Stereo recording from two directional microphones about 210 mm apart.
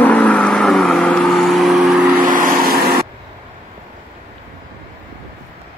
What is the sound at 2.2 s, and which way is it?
Vehicle, 40° right (ahead or behind).